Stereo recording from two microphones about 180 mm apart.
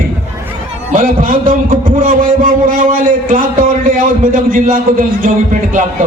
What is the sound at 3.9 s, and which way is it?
A man's voice, 45° right (ahead or behind).